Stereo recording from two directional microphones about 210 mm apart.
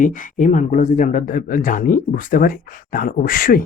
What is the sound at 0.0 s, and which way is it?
Speech, 40° left (ahead or behind).